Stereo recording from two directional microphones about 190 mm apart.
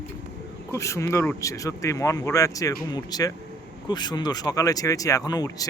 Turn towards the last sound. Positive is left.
turn(degrees=20)  # may be behind; listen again after turning